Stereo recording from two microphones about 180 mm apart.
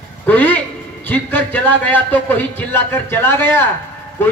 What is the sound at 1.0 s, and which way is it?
A man's voice, 10° left (ahead or behind).